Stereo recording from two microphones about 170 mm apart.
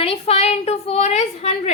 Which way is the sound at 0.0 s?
35° left (ahead or behind).